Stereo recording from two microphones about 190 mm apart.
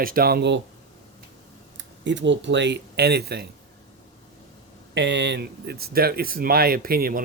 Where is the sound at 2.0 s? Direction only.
70° right (ahead or behind).